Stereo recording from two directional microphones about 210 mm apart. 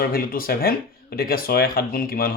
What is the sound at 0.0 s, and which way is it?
Speech, 45° left (ahead or behind).